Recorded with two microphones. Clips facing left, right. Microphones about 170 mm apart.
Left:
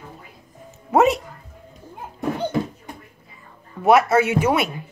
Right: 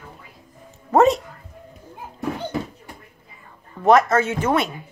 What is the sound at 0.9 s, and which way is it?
Speech, centre (ahead or behind).